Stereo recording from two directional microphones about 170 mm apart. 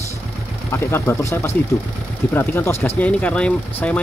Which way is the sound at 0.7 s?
15° left (ahead or behind).